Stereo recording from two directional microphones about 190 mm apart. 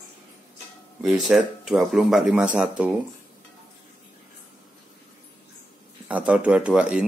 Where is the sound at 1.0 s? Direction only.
Centre (ahead or behind).